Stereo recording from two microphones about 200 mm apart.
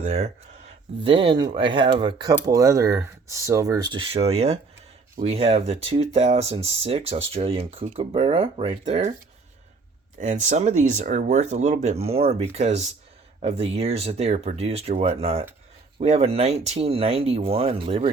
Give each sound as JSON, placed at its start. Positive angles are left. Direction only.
{"t": 0.0, "sound": "speech", "side_deg": -40}
{"t": 1.0, "sound": "speech", "side_deg": -25}
{"t": 10.2, "sound": "speech", "side_deg": -40}